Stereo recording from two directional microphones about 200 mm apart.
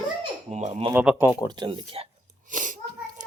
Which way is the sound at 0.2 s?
35° right (ahead or behind).